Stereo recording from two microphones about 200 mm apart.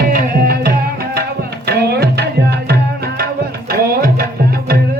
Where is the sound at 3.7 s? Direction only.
45° right (ahead or behind).